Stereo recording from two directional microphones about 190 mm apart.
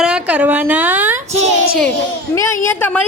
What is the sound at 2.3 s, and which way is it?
Speech, 15° left (ahead or behind).